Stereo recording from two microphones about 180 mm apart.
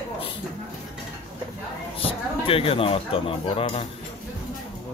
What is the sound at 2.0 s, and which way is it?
Speech, 30° left (ahead or behind).